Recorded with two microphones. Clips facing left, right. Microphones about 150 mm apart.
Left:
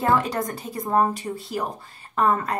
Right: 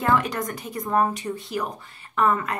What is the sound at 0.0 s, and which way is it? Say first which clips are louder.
A woman's voice: left 1 dB; 30° left (ahead or behind).